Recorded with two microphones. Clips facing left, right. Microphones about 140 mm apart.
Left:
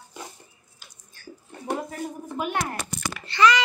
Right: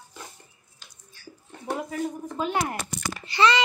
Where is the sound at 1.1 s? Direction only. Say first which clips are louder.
Left 2 dB; 50° left (ahead or behind).